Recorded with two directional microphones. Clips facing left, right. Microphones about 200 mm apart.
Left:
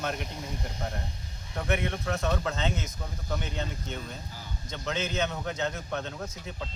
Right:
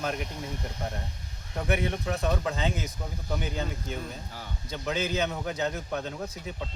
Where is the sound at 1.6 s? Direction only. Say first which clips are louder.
Right 1 dB; 15° right (ahead or behind).